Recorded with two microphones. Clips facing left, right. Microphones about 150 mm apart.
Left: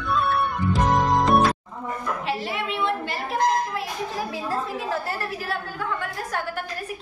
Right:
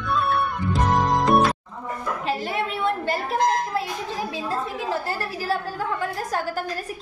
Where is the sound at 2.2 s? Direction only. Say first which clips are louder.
Right 4 dB; 45° right (ahead or behind).